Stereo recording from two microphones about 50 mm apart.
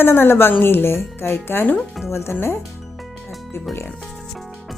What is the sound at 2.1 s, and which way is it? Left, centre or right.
Speech, left.